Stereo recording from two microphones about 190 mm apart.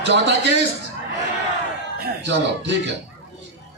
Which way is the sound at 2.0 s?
70° right (ahead or behind).